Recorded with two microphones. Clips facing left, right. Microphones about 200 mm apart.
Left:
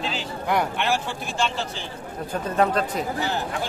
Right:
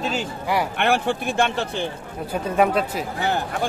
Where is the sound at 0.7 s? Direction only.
60° right (ahead or behind).